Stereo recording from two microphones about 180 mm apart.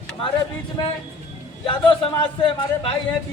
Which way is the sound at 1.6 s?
30° left (ahead or behind).